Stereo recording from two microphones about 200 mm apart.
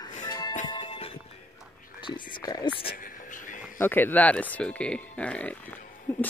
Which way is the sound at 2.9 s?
40° left (ahead or behind).